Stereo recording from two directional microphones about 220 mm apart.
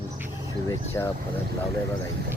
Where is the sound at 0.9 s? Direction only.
10° left (ahead or behind).